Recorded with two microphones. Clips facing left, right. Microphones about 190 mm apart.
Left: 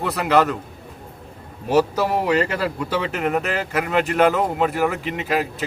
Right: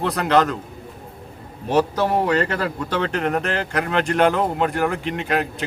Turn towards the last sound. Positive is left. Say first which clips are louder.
# even
turn(degrees=0)  # may be behind; listen again after turning